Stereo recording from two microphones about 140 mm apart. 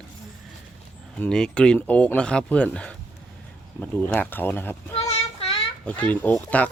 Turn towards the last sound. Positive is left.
turn(degrees=10)  # may be behind; listen again after turning